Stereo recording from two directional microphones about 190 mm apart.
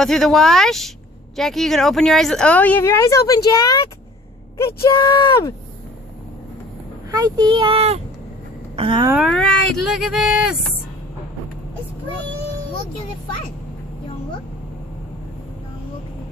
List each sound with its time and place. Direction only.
0.0 s speech: centre (ahead or behind); by 3.8 s 20° left (ahead or behind)
4.8 s speech: 20° left (ahead or behind)
7.1 s speech: 20° right (ahead or behind)
9.2 s speech: 5° left (ahead or behind)